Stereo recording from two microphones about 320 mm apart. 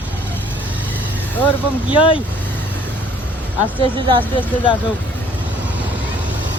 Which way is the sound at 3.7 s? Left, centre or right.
Centre.